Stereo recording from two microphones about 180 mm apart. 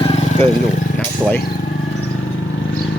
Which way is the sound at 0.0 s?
30° left (ahead or behind).